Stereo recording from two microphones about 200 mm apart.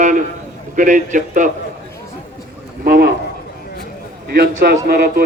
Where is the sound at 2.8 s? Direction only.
50° right (ahead or behind).